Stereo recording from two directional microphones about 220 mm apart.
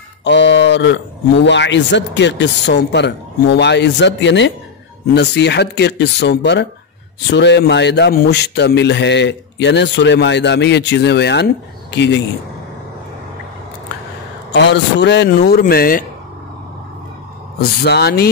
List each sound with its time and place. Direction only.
0.2 s a man's voice: 55° left (ahead or behind)
14.5 s a man's voice: 50° left (ahead or behind)
17.6 s a man's voice: 50° left (ahead or behind)